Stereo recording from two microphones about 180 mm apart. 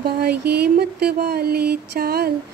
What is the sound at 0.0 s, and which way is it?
Speech, 65° right (ahead or behind).